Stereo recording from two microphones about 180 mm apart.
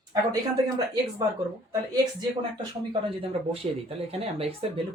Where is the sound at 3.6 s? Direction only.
35° right (ahead or behind).